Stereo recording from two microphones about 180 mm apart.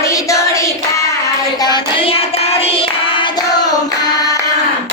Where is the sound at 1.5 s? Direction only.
25° left (ahead or behind).